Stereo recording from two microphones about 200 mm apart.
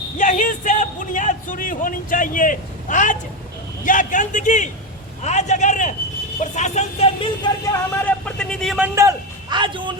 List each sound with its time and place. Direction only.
0.2 s a sound: 40° left (ahead or behind)
3.8 s music: 40° left (ahead or behind)
7.7 s speech: 5° left (ahead or behind)
9.0 s a man's voice: 20° right (ahead or behind)